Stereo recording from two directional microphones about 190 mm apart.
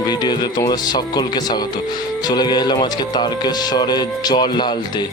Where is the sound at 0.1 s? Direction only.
20° left (ahead or behind).